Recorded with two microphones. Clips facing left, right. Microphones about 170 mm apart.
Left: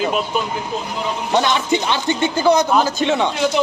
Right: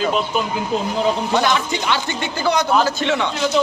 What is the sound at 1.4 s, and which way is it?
A man's voice, 20° left (ahead or behind).